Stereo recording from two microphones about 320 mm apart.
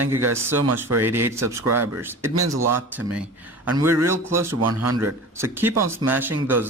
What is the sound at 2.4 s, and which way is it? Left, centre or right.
Speech, right.